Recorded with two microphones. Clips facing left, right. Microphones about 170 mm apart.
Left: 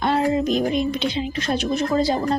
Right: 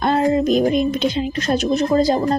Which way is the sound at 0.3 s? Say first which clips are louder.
Right 4 dB; 45° right (ahead or behind).